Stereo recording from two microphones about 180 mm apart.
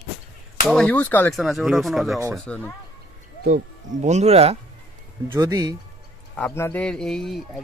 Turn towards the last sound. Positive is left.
turn(degrees=0)  # may be behind; listen again after turning